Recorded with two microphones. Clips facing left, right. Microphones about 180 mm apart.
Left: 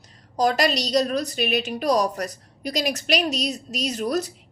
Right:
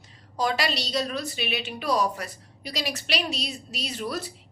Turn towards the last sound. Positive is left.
turn(degrees=45)  # may be behind; listen again after turning